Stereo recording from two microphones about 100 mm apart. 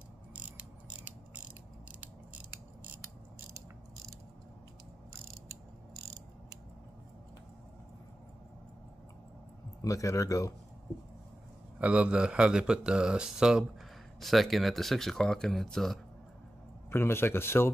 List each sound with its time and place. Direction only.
0.4 s mechanisms: 15° right (ahead or behind)
9.8 s speech: 35° left (ahead or behind)
11.8 s speech: 15° right (ahead or behind); by 16.0 s 5° left (ahead or behind)
16.9 s a man's voice: 25° left (ahead or behind)